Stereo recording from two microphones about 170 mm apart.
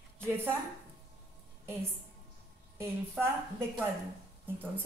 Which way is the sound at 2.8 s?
15° right (ahead or behind).